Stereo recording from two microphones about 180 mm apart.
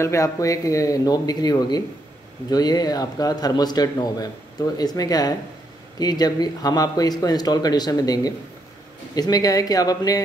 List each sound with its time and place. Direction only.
0.0 s a man's voice: 15° left (ahead or behind)